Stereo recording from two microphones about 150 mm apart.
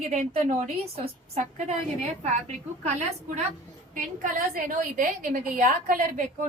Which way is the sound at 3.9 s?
65° right (ahead or behind).